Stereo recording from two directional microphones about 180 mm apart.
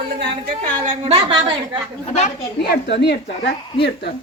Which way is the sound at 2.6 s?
70° left (ahead or behind).